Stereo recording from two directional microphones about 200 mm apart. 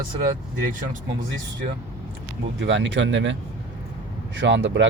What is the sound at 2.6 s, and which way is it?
Speech, 65° right (ahead or behind).